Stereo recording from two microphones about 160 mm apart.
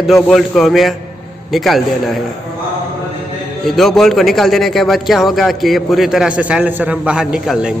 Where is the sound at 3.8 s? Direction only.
Centre (ahead or behind).